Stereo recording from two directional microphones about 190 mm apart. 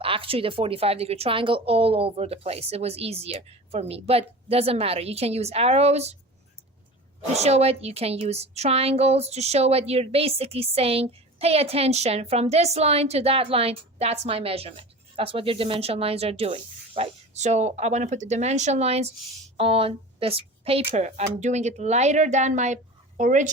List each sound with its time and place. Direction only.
0.0 s a woman's voice: 30° right (ahead or behind)
7.3 s a woman's voice: 35° right (ahead or behind)